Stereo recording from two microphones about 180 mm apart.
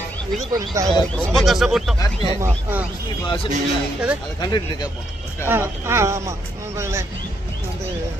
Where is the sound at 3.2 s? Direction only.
30° left (ahead or behind).